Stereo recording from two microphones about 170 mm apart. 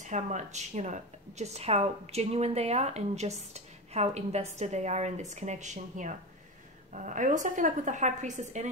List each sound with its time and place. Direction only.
0.0 s a woman's voice: 45° right (ahead or behind)